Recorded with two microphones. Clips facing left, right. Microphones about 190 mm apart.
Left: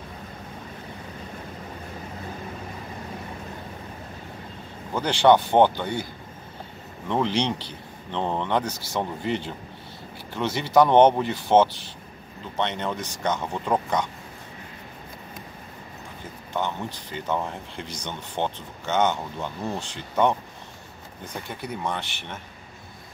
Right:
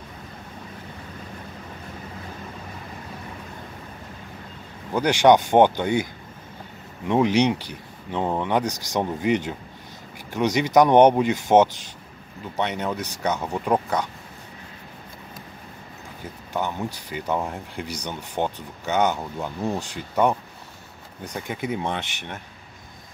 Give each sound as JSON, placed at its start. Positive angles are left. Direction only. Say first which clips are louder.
{"t": 4.9, "sound": "speech", "louder": "right 2 dB", "side_deg": -15}
{"t": 7.1, "sound": "speech", "louder": "right 5 dB", "side_deg": -10}
{"t": 16.5, "sound": "speech", "louder": "right 1 dB", "side_deg": -10}
{"t": 21.8, "sound": "speech", "louder": "right 2 dB", "side_deg": -15}